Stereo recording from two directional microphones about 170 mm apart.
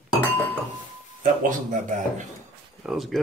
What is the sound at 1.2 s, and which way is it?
Speech, 50° right (ahead or behind).